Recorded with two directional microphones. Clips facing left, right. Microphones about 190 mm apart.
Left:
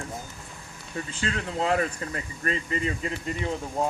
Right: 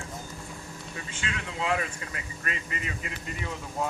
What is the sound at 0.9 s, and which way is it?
Speech, 35° left (ahead or behind).